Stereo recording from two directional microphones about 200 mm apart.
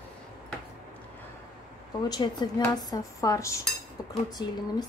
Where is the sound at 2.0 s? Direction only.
20° left (ahead or behind).